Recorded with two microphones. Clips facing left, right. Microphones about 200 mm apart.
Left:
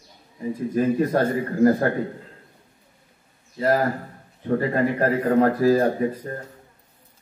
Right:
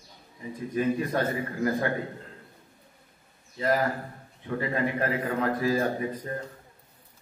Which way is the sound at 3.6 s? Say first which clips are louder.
Left 5 dB; 45° left (ahead or behind).